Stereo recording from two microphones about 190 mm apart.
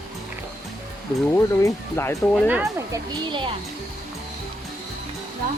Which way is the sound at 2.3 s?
5° right (ahead or behind).